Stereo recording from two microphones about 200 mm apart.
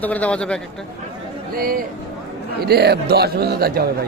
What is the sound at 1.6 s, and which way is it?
A man's voice, 45° right (ahead or behind).